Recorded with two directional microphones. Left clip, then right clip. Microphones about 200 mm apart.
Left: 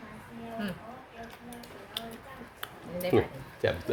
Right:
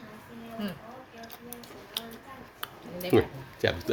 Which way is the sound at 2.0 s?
15° right (ahead or behind).